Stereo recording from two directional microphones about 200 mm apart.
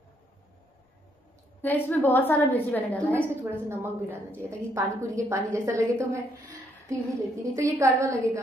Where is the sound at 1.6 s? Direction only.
10° left (ahead or behind).